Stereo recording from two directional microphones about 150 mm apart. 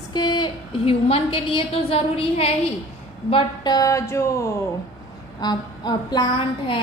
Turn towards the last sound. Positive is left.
turn(degrees=35)  # may be behind; listen again after turning